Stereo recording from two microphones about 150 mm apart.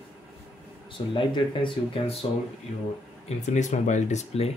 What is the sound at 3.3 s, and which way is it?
Speech, 50° left (ahead or behind).